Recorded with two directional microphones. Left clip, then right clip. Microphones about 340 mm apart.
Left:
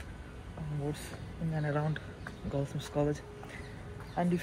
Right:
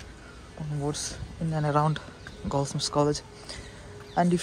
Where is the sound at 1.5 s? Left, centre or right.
Right.